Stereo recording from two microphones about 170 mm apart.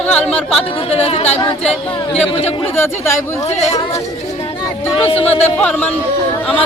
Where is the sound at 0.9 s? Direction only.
35° left (ahead or behind).